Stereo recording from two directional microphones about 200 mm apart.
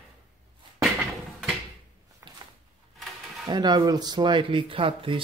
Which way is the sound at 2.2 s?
15° right (ahead or behind).